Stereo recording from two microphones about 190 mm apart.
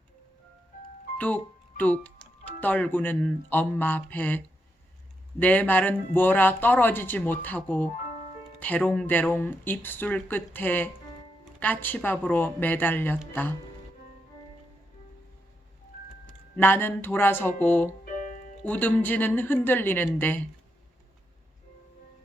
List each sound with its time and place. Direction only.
1.2 s speech: 10° left (ahead or behind)
16.6 s speech: 10° left (ahead or behind)
18.0 s music: 45° left (ahead or behind)
18.6 s speech: 10° left (ahead or behind)